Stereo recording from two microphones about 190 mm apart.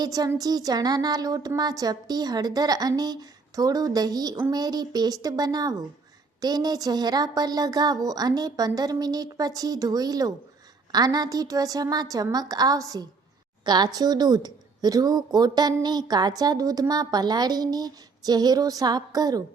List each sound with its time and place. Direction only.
0.0 s a woman's voice: 20° right (ahead or behind)